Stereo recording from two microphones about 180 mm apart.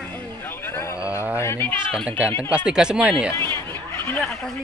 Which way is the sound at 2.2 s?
15° left (ahead or behind).